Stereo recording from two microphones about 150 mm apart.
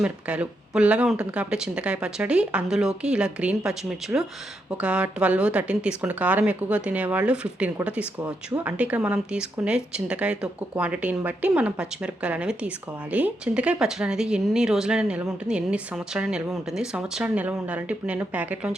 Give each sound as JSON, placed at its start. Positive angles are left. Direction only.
{"t": 0.0, "sound": "speech", "side_deg": -5}